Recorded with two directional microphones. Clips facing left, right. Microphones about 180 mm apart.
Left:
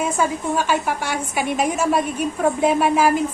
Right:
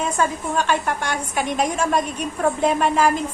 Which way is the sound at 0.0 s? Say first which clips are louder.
Left 1 dB; 10° left (ahead or behind).